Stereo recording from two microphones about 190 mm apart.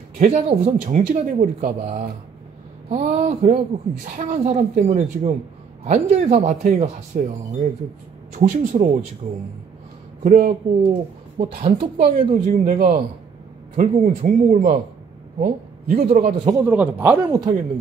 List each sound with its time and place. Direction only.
0.2 s speech: 35° right (ahead or behind)
10.2 s speech: 45° right (ahead or behind)
11.3 s speech: 35° right (ahead or behind)
16.4 s speech: 15° right (ahead or behind)